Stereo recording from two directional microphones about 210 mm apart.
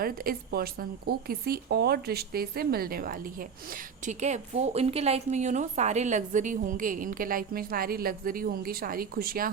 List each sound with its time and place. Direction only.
0.0 s speech: 45° right (ahead or behind)